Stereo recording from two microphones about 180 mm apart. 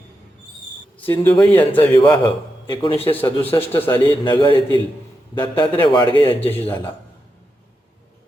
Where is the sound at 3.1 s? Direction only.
10° left (ahead or behind).